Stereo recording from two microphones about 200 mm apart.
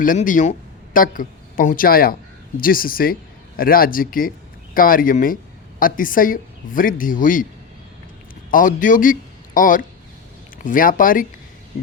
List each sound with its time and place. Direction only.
0.0 s a woman's voice: 40° left (ahead or behind)
8.4 s speech: 45° left (ahead or behind)